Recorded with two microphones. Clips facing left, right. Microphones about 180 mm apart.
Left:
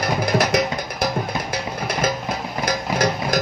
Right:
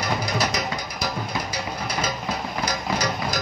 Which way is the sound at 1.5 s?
55° left (ahead or behind).